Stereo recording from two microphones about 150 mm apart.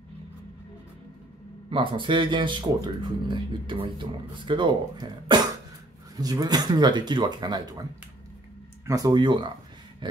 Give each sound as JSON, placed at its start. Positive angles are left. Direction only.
{"t": 1.7, "sound": "speech", "side_deg": -35}
{"t": 8.8, "sound": "speech", "side_deg": -25}